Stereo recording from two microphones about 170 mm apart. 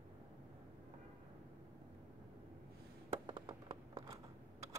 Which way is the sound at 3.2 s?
30° right (ahead or behind).